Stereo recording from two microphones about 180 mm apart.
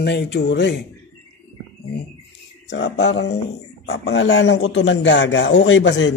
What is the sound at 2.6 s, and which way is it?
Speech, 85° left.